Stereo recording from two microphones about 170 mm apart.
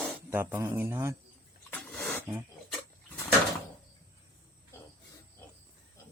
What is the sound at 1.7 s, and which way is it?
Roaring cats, 5° left (ahead or behind).